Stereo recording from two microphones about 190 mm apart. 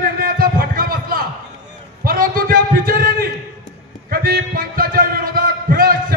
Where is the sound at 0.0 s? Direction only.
50° right (ahead or behind).